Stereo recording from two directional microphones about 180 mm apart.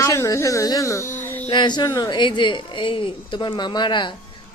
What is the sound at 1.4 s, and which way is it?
A woman's voice, 25° left (ahead or behind).